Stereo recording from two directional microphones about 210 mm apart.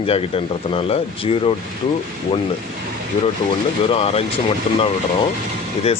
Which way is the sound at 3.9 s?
25° left (ahead or behind).